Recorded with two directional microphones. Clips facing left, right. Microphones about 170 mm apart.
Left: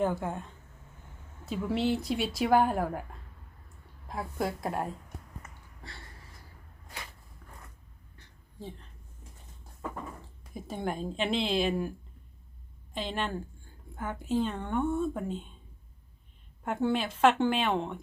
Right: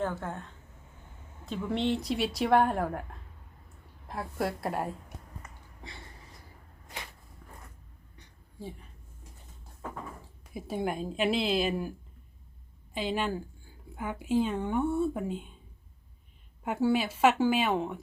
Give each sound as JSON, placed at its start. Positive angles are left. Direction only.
{"t": 0.0, "sound": "a woman's voice", "side_deg": 15}
{"t": 8.5, "sound": "a sound", "side_deg": -10}
{"t": 10.5, "sound": "a woman's voice", "side_deg": -5}
{"t": 16.6, "sound": "a woman's voice", "side_deg": -5}